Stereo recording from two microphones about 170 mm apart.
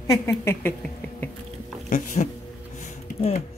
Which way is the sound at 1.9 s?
45° left (ahead or behind).